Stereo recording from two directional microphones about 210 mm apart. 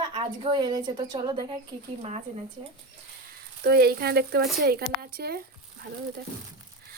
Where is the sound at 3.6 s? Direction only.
50° right (ahead or behind).